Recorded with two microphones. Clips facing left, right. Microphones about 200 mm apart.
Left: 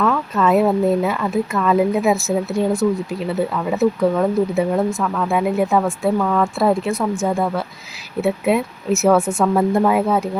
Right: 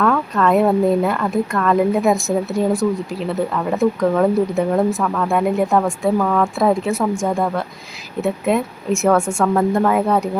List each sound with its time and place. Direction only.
0.0 s speech: 5° left (ahead or behind)